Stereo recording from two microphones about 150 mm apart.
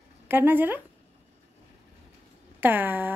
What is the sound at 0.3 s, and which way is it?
Speech, 15° right (ahead or behind).